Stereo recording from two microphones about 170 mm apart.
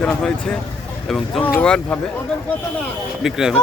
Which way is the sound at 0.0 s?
5° left (ahead or behind).